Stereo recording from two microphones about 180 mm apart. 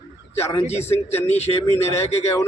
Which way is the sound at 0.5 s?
35° left (ahead or behind).